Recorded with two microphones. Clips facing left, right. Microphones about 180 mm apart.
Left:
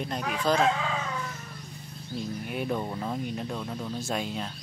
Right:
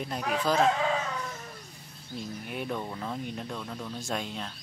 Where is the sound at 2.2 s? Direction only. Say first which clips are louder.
Left 3 dB; centre (ahead or behind).